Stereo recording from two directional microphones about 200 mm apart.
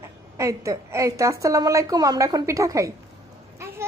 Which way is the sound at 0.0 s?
15° right (ahead or behind).